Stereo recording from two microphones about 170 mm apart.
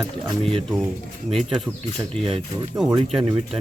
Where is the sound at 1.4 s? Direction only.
Centre (ahead or behind).